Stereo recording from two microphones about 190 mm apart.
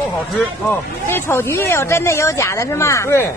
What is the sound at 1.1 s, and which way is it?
Speech, 15° left (ahead or behind).